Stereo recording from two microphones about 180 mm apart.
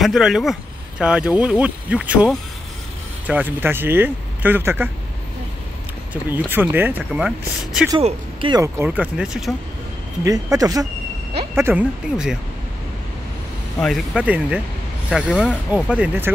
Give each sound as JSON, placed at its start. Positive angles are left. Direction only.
{"t": 0.0, "sound": "speech", "side_deg": 0}
{"t": 6.3, "sound": "speech", "side_deg": -10}
{"t": 8.0, "sound": "speech", "side_deg": -25}
{"t": 8.7, "sound": "speech", "side_deg": -10}
{"t": 10.2, "sound": "speech", "side_deg": -20}
{"t": 13.7, "sound": "speech", "side_deg": 0}